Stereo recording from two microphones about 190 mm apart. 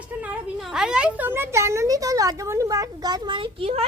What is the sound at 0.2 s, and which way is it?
A woman's voice, 5° right (ahead or behind).